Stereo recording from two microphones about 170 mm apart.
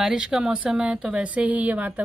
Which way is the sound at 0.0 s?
5° right (ahead or behind).